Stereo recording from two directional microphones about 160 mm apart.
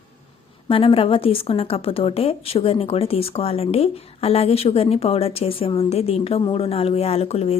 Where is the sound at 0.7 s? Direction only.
35° left (ahead or behind).